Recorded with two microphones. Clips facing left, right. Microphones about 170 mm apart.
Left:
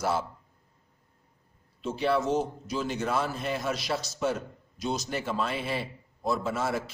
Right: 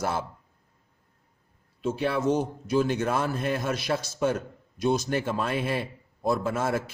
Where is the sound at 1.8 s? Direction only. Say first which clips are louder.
Right 1 dB; 50° right (ahead or behind).